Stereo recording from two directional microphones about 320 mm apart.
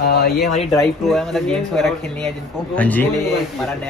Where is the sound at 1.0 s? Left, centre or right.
Centre.